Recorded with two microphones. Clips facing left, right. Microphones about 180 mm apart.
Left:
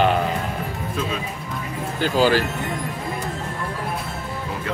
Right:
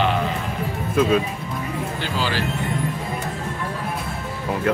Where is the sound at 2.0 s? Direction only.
45° left (ahead or behind).